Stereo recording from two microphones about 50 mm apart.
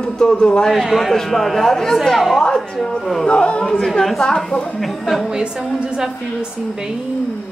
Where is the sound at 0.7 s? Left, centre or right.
Centre.